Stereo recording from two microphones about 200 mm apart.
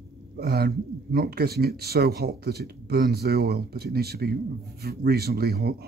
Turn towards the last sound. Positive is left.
turn(degrees=-50)  # may be behind; listen again after turning